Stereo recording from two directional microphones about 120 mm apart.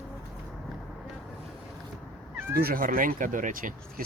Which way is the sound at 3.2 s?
90° right.